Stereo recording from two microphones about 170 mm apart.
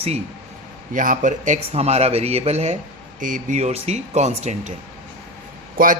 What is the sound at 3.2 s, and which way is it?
Speech, 50° right (ahead or behind).